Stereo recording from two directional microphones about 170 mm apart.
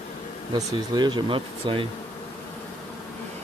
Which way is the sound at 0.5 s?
25° right (ahead or behind).